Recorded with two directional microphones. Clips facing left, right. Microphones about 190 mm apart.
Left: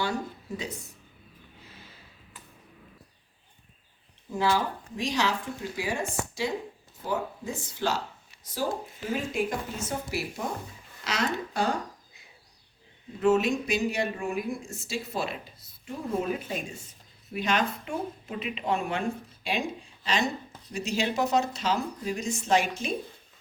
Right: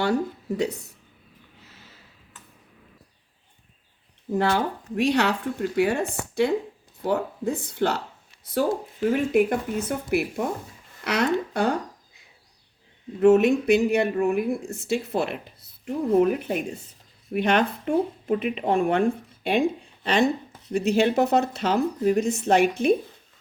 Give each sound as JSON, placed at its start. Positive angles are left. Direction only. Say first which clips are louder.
{"t": 0.0, "sound": "speech", "louder": "right 7 dB", "side_deg": -65}
{"t": 4.4, "sound": "speech", "louder": "right 3 dB", "side_deg": -60}
{"t": 9.1, "sound": "speech", "louder": "right 7 dB", "side_deg": -60}
{"t": 13.1, "sound": "speech", "louder": "right 7 dB", "side_deg": -60}